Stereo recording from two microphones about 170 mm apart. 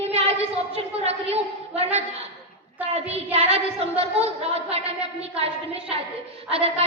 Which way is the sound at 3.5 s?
35° right (ahead or behind).